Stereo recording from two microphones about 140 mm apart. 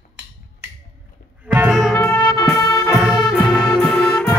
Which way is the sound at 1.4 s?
10° right (ahead or behind).